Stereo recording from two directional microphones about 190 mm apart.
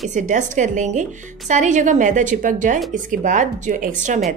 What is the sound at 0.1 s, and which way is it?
A woman's voice, 40° right (ahead or behind).